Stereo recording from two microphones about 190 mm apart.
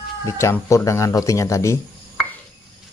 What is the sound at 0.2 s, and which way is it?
Speech, 15° left (ahead or behind).